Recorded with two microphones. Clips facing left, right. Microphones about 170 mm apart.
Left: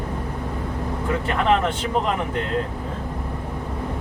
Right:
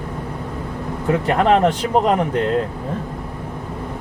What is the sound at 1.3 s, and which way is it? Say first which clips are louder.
Speech: right 5 dB; 40° right (ahead or behind).